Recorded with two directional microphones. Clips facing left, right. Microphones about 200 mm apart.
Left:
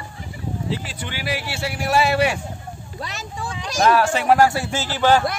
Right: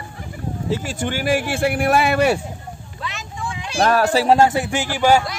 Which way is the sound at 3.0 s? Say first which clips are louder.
Right 1 dB; 40° left (ahead or behind).